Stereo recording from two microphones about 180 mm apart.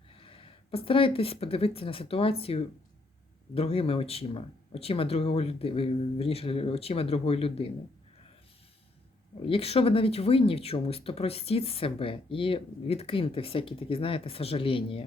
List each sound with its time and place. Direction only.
0.1 s speech: 30° left (ahead or behind)
9.5 s speech: 35° left (ahead or behind)